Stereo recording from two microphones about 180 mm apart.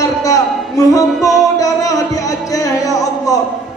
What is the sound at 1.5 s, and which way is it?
Music, 20° left (ahead or behind).